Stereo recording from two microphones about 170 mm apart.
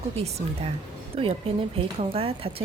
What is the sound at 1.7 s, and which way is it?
Speech, 35° right (ahead or behind).